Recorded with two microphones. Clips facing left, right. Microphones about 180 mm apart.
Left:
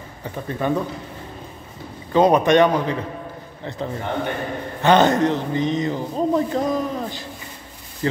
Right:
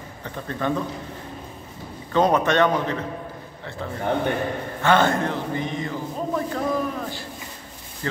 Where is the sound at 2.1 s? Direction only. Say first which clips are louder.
Left 4 dB; 15° left (ahead or behind).